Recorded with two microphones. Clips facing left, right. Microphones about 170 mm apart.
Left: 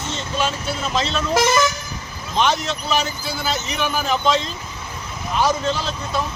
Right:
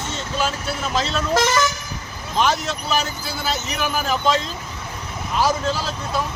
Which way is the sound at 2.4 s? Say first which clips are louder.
Left 1 dB; 5° right (ahead or behind).